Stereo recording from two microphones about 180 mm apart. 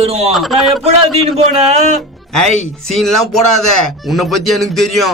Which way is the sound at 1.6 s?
35° right (ahead or behind).